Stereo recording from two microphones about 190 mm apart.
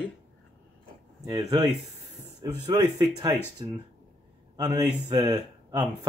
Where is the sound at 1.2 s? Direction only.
20° right (ahead or behind).